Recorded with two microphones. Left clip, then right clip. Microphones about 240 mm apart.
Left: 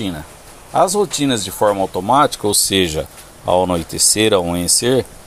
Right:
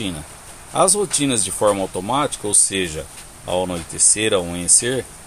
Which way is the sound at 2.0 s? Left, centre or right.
Left.